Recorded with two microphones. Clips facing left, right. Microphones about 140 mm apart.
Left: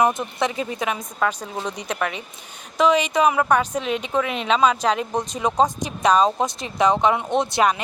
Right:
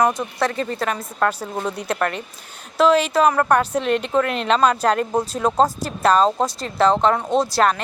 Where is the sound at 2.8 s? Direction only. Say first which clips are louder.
Right 2 dB; 15° left (ahead or behind); by 5.3 s 5° right (ahead or behind).